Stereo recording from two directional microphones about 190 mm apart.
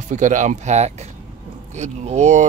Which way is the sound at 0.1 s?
40° right (ahead or behind).